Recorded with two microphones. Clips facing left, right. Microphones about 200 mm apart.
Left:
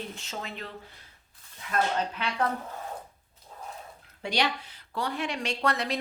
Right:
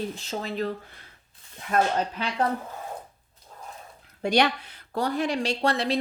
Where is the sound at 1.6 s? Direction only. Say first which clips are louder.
Right 5 dB; 50° right (ahead or behind).